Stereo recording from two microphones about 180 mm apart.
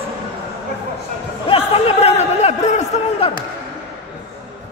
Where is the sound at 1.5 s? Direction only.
35° left (ahead or behind).